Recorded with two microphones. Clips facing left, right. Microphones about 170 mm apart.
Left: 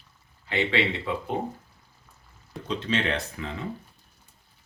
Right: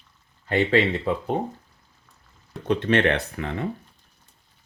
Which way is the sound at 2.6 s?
60° right (ahead or behind).